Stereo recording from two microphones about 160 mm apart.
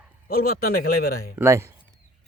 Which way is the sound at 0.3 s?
70° left (ahead or behind).